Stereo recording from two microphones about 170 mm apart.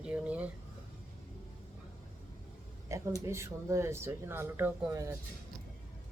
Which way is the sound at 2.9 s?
15° right (ahead or behind).